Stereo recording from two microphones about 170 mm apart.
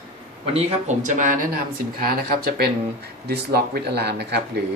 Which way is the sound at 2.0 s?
60° right (ahead or behind).